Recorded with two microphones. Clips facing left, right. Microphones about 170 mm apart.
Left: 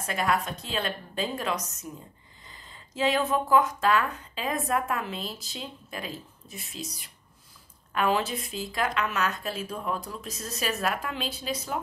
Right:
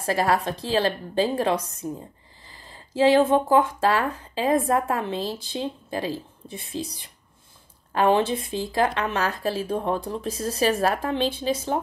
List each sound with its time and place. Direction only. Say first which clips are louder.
0.0 s a woman's voice: right 5 dB; 35° right (ahead or behind)